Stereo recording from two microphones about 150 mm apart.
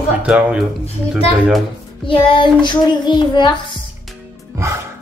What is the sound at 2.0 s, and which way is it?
A child's voice, 30° left (ahead or behind).